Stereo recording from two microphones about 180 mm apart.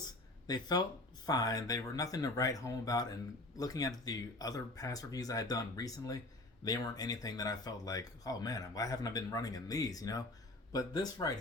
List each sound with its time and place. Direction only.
0.4 s speech: 20° left (ahead or behind)